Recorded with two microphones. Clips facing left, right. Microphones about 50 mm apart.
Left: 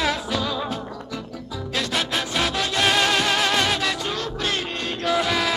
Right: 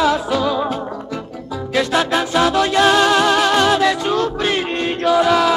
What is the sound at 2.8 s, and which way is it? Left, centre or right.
Music, centre.